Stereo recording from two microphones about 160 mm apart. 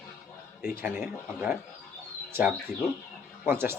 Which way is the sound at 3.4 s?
15° right (ahead or behind).